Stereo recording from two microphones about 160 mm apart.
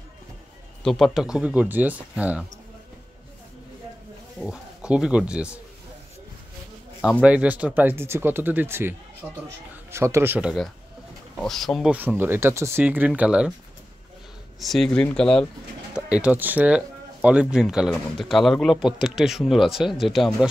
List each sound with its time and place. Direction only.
0.8 s speech: centre (ahead or behind)
4.4 s speech: 5° right (ahead or behind)
7.2 s speech: 10° right (ahead or behind)
9.8 s speech: 15° right (ahead or behind)
11.4 s speech: centre (ahead or behind)
11.9 s speech: 10° right (ahead or behind)
14.6 s speech: centre (ahead or behind)
15.9 s speech: 5° right (ahead or behind)